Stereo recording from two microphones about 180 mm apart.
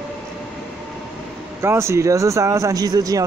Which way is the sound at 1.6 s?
15° right (ahead or behind).